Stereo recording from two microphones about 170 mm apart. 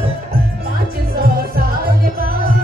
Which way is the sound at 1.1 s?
60° right (ahead or behind).